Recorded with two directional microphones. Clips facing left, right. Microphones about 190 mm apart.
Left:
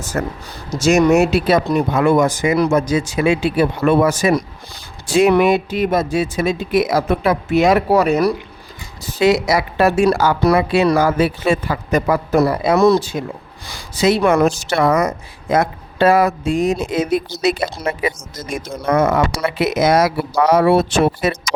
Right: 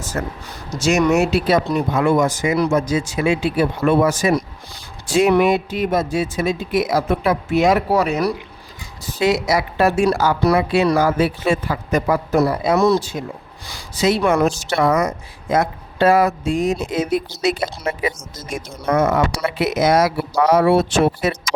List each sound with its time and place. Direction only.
0.1 s speech: 55° left (ahead or behind)
0.8 s speech: 45° left (ahead or behind)
9.1 s speech: 75° left (ahead or behind)
13.7 s speech: 60° left (ahead or behind)